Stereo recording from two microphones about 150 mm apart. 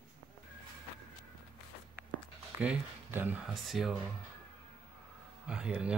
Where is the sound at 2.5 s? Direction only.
10° right (ahead or behind).